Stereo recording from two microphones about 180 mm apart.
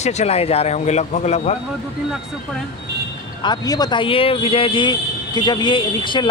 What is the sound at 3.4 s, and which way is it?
Speech, 25° left (ahead or behind).